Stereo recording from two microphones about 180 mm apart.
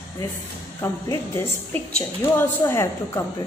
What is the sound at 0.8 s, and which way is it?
Speech, 20° left (ahead or behind).